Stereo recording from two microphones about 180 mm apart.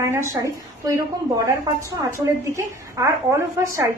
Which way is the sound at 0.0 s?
15° right (ahead or behind).